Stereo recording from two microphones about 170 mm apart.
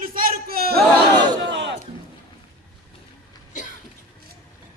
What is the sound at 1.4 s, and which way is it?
Crowd, 90° right.